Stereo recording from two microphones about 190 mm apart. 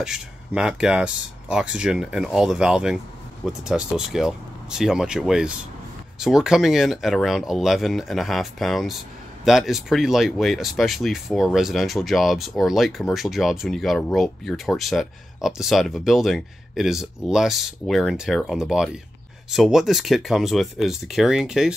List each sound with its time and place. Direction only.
0.0 s speech: 5° right (ahead or behind)